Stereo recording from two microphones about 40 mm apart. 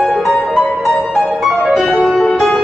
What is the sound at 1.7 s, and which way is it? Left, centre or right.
Music, centre.